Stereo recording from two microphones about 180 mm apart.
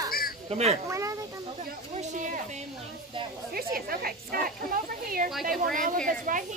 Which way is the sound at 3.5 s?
55° right (ahead or behind).